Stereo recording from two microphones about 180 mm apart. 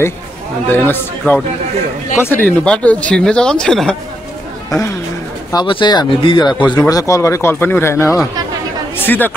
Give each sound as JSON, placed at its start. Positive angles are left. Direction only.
{"t": 0.7, "sound": "speech", "side_deg": 10}
{"t": 5.5, "sound": "speech", "side_deg": 25}